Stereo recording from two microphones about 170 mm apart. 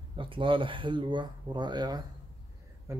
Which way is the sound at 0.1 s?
30° right (ahead or behind).